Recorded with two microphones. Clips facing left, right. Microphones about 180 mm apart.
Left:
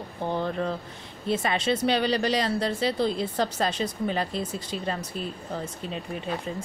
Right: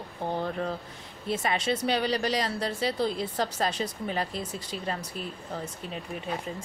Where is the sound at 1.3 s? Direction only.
25° left (ahead or behind).